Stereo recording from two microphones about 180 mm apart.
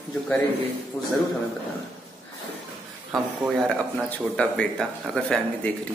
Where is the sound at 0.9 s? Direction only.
Centre (ahead or behind).